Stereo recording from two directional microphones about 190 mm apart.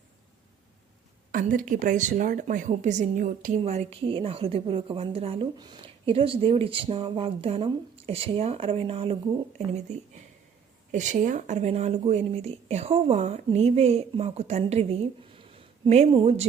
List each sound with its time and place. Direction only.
1.3 s a woman's voice: 45° right (ahead or behind); by 9.1 s 30° right (ahead or behind)
10.9 s speech: 40° right (ahead or behind)